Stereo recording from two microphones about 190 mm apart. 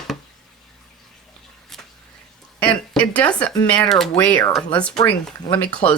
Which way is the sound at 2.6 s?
5° left (ahead or behind).